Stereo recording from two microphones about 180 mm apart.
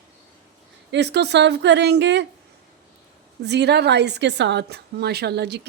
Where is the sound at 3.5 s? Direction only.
70° right (ahead or behind).